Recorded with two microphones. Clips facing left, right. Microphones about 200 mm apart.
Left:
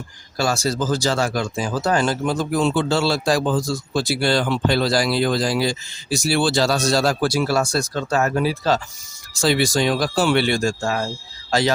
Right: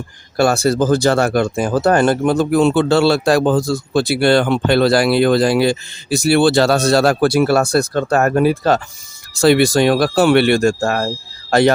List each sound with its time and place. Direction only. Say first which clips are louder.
0.3 s speech: right 7 dB; 60° right (ahead or behind)